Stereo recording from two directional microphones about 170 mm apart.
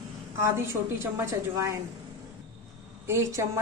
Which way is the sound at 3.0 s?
15° right (ahead or behind).